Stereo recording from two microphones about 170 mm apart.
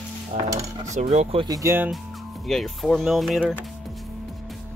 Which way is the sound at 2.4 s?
Centre (ahead or behind).